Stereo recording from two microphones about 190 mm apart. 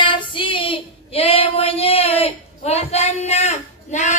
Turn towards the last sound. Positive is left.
turn(degrees=35)  # may be behind; listen again after turning